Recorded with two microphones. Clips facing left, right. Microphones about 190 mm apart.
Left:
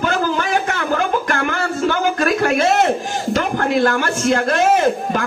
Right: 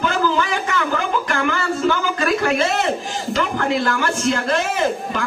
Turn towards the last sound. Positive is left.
turn(degrees=55)  # may be behind; listen again after turning